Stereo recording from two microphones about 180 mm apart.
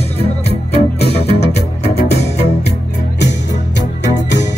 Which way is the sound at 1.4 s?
35° left (ahead or behind).